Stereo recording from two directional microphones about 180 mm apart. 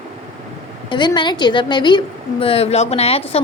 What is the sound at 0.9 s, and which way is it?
A woman's voice, 25° left (ahead or behind).